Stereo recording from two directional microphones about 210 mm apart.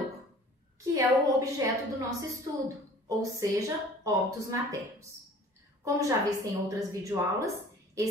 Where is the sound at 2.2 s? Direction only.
15° right (ahead or behind).